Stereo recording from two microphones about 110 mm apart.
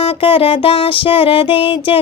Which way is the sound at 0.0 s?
55° left (ahead or behind).